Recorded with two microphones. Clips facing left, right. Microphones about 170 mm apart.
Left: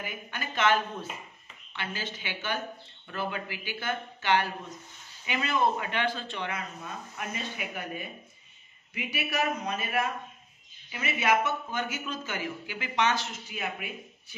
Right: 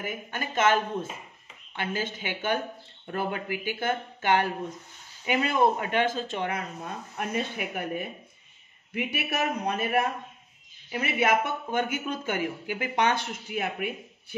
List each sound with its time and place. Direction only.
0.0 s speech: 45° right (ahead or behind)